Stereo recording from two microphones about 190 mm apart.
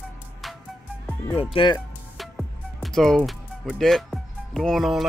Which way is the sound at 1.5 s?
25° left (ahead or behind).